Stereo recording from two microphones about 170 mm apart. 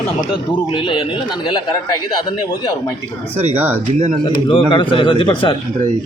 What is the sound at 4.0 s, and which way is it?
Speech, 45° right (ahead or behind).